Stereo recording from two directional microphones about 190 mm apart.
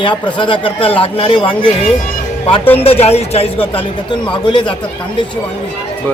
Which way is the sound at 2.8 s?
30° left (ahead or behind).